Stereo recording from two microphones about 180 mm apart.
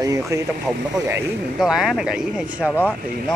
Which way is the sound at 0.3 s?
15° right (ahead or behind).